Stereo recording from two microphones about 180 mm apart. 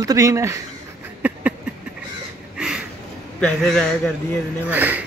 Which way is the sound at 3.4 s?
Centre (ahead or behind).